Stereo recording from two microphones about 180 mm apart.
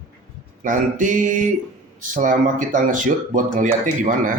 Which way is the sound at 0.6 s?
45° right (ahead or behind).